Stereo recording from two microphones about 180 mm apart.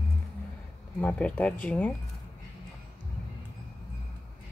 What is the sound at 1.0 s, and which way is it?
Speech, 5° left (ahead or behind).